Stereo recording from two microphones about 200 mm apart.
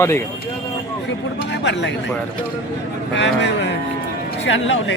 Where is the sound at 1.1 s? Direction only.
60° left (ahead or behind).